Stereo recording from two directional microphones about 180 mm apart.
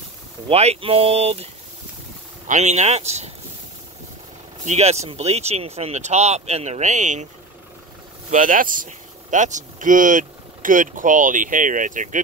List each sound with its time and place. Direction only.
0.5 s speech: 35° right (ahead or behind)
4.6 s speech: 35° right (ahead or behind)
8.3 s speech: 45° right (ahead or behind)